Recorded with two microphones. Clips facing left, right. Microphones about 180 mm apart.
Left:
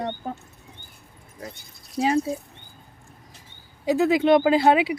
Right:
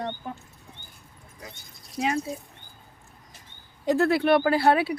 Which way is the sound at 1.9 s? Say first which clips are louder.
Left 5 dB; 30° left (ahead or behind).